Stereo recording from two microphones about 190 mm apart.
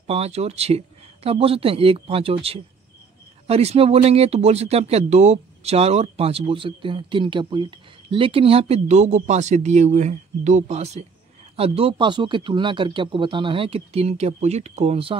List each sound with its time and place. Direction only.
0.0 s speech: 35° right (ahead or behind)